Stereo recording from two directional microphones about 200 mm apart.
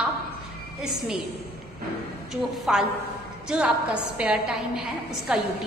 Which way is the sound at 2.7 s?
5° right (ahead or behind).